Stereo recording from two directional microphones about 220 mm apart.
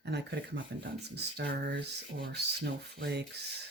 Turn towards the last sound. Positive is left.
turn(degrees=-50)  # may be behind; listen again after turning